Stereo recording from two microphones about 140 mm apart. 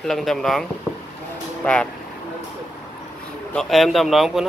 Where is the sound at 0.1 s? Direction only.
Centre (ahead or behind).